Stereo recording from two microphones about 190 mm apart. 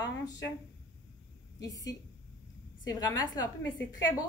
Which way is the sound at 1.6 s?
20° left (ahead or behind).